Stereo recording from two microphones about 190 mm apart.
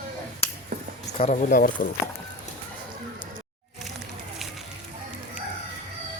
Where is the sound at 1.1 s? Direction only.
40° left (ahead or behind).